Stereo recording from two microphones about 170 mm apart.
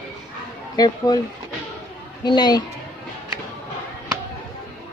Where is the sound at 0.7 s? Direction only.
20° left (ahead or behind).